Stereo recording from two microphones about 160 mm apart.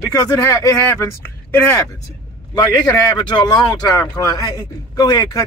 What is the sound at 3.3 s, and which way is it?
Speech, 25° left (ahead or behind).